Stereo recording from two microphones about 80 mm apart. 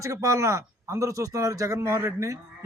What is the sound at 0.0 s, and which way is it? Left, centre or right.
Speech, right.